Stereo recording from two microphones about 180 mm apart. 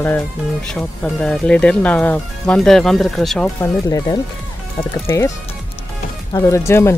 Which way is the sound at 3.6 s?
20° left (ahead or behind).